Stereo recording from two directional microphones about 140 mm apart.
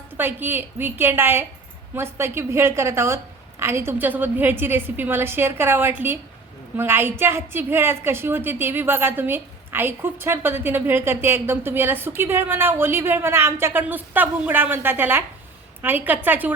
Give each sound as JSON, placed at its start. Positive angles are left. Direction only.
{"t": 0.2, "sound": "a woman's voice", "side_deg": -15}